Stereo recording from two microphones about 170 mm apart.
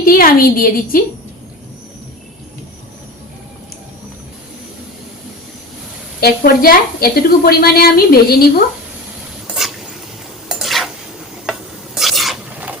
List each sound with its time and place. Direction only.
0.0 s a woman's voice: 60° left (ahead or behind)
6.1 s a woman's voice: 65° left (ahead or behind)
10.5 s stir: centre (ahead or behind)
11.9 s filing: centre (ahead or behind)